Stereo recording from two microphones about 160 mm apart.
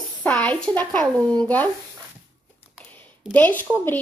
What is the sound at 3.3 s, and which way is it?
Speech, 10° left (ahead or behind).